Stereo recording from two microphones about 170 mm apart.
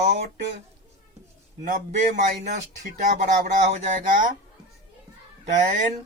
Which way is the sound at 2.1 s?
45° right (ahead or behind).